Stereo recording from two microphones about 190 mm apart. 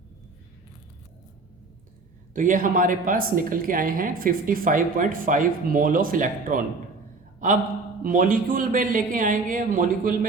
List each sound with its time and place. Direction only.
2.3 s a woman's voice: 45° right (ahead or behind)